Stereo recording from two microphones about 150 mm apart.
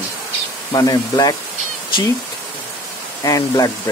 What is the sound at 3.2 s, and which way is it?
Speech, 25° left (ahead or behind).